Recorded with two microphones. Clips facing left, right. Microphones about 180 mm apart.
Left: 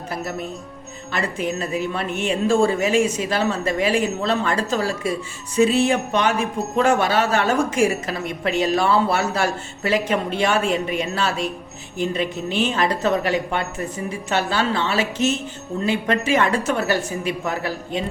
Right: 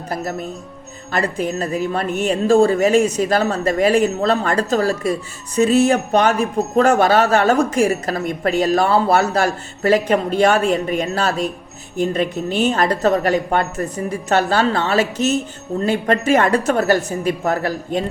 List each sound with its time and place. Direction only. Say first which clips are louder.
0.1 s a woman's voice: right 3 dB; 40° right (ahead or behind)